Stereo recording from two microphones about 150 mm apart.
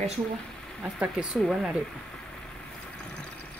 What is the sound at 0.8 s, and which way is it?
Speech, 5° right (ahead or behind).